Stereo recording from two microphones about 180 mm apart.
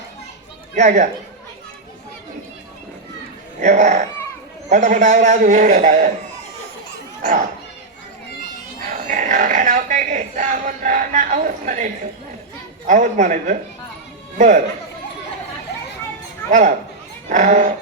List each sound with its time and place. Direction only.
0.8 s a man's voice: 40° right (ahead or behind)
3.6 s a man's voice: 40° right (ahead or behind)
7.2 s a child's voice: 50° right (ahead or behind)
8.8 s speech: 50° right (ahead or behind)
12.9 s a man's voice: 45° right (ahead or behind)
16.5 s a man's voice: 45° right (ahead or behind)